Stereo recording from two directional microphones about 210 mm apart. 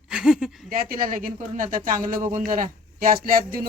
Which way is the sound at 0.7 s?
40° right (ahead or behind).